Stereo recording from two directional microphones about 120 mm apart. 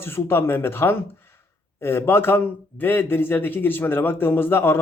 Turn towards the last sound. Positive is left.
turn(degrees=20)  # may be behind; listen again after turning